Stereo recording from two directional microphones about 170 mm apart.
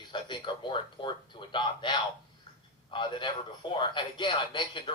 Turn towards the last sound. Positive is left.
turn(degrees=30)  # may be behind; listen again after turning